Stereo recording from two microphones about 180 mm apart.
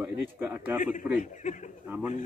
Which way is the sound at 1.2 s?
45° left (ahead or behind).